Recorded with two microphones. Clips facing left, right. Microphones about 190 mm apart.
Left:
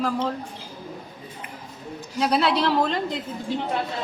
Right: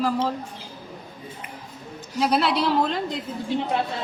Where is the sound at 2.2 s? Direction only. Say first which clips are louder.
Even; centre (ahead or behind).